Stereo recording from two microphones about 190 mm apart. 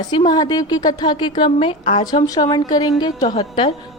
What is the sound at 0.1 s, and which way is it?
A woman's voice, 25° left (ahead or behind).